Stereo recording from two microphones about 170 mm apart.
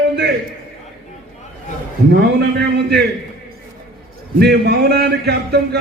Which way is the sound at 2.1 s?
75° right (ahead or behind).